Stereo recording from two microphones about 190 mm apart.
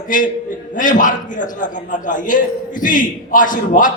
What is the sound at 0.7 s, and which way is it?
A man's voice, 45° left (ahead or behind).